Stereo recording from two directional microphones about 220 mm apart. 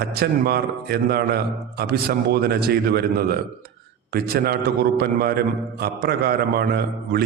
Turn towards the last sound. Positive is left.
turn(degrees=-45)  # may be behind; listen again after turning